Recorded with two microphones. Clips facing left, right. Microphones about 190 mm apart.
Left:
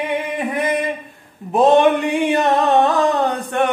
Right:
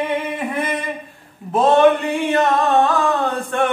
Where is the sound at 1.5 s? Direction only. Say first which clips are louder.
Even; 15° left (ahead or behind).